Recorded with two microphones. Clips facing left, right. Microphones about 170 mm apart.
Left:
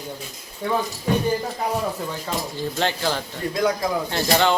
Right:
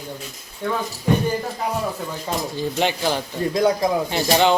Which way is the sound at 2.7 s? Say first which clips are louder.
Right 2 dB; 15° right (ahead or behind).